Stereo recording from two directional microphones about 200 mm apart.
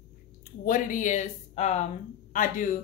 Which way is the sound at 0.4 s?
40° left (ahead or behind).